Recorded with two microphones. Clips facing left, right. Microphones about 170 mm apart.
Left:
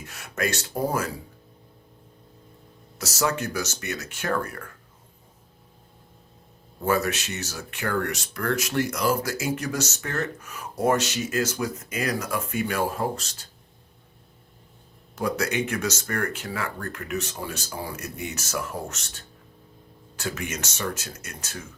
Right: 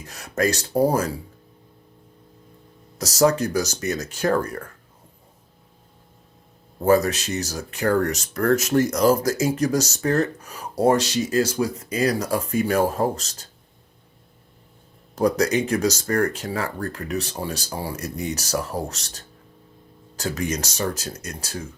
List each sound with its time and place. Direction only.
0.0 s speech: 35° right (ahead or behind)
3.0 s speech: 35° right (ahead or behind)
6.8 s speech: 35° right (ahead or behind)
15.1 s speech: 40° right (ahead or behind)